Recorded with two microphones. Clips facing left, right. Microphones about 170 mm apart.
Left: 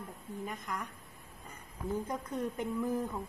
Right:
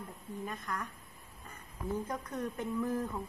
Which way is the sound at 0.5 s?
15° left (ahead or behind).